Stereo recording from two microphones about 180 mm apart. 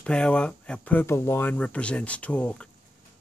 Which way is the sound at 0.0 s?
5° left (ahead or behind).